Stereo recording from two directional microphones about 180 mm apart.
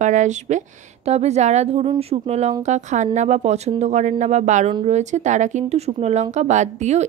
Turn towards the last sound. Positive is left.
turn(degrees=-40)  # may be behind; listen again after turning